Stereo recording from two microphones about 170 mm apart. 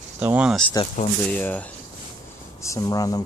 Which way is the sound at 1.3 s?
10° left (ahead or behind).